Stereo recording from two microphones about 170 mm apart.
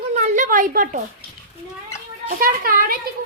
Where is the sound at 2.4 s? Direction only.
60° right (ahead or behind).